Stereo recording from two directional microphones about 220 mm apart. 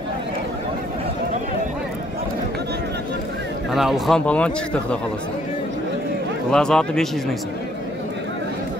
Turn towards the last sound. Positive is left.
turn(degrees=0)  # may be behind; listen again after turning